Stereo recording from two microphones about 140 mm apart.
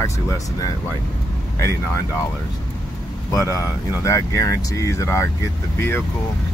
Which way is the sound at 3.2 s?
25° left (ahead or behind).